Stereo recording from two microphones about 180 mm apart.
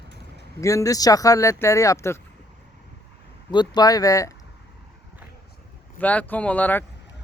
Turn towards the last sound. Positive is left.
turn(degrees=10)  # may be behind; listen again after turning